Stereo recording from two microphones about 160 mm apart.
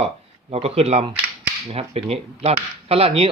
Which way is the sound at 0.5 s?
40° right (ahead or behind).